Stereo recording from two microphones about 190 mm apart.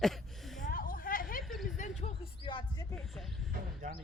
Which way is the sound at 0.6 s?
45° left (ahead or behind).